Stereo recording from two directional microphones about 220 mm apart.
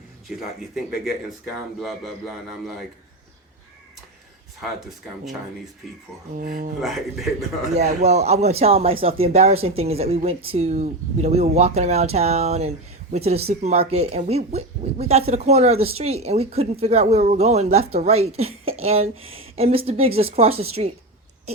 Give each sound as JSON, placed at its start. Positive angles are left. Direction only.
{"t": 1.8, "sound": "speech", "side_deg": 0}
{"t": 5.8, "sound": "speech", "side_deg": 0}
{"t": 6.3, "sound": "speech", "side_deg": -40}
{"t": 6.7, "sound": "speech", "side_deg": 0}
{"t": 7.7, "sound": "speech", "side_deg": -30}